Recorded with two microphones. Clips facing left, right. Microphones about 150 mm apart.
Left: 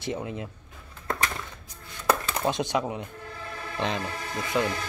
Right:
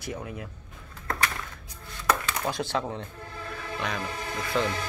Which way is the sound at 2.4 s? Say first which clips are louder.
Left 4 dB; 20° left (ahead or behind).